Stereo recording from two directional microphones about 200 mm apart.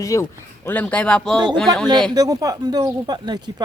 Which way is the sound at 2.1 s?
20° right (ahead or behind).